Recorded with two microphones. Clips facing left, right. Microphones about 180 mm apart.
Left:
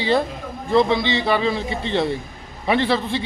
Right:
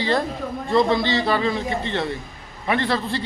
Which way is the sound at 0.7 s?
20° left (ahead or behind).